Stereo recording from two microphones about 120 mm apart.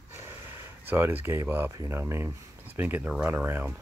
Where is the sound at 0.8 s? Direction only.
20° right (ahead or behind).